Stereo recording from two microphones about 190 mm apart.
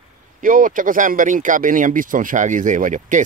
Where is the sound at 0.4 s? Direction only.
45° right (ahead or behind).